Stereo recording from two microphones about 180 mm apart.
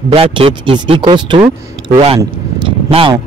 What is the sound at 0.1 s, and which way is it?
Speech, 30° right (ahead or behind).